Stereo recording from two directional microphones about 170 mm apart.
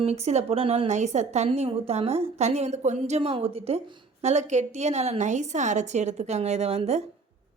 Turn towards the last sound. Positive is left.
turn(degrees=-40)  # may be behind; listen again after turning